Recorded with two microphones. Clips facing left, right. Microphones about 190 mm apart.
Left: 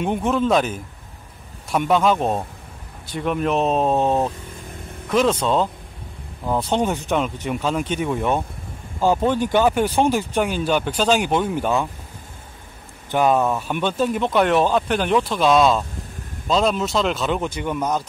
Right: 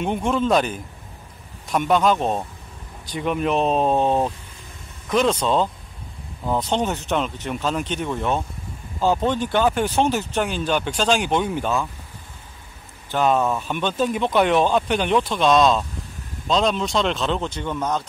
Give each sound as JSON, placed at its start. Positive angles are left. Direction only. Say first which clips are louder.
{"t": 0.0, "sound": "speech", "louder": "left 1 dB", "side_deg": 5}
{"t": 13.1, "sound": "speech", "louder": "left 2 dB", "side_deg": 10}